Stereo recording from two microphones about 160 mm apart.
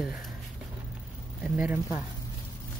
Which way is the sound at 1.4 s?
5° right (ahead or behind).